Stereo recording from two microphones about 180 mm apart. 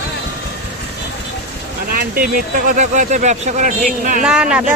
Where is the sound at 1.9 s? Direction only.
55° right (ahead or behind).